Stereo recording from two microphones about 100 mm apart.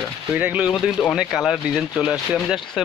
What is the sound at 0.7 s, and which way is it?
Speech, centre (ahead or behind).